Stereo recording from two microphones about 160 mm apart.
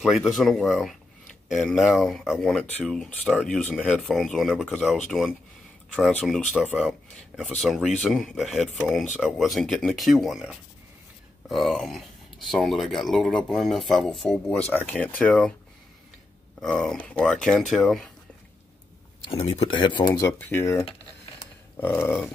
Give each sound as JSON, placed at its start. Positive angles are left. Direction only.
{"t": 0.0, "sound": "speech", "side_deg": 0}
{"t": 16.6, "sound": "speech", "side_deg": 5}
{"t": 19.2, "sound": "speech", "side_deg": 35}
{"t": 20.2, "sound": "speech", "side_deg": 15}